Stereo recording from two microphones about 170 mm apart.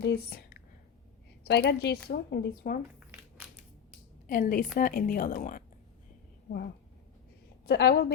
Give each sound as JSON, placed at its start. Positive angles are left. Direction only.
{"t": 0.0, "sound": "a woman's voice", "side_deg": 75}
{"t": 4.3, "sound": "a woman's voice", "side_deg": 55}
{"t": 7.7, "sound": "a woman's voice", "side_deg": 65}